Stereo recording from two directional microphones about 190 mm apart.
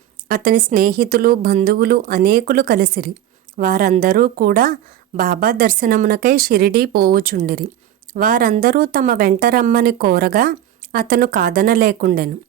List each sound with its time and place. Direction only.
0.3 s a woman's voice: 45° right (ahead or behind)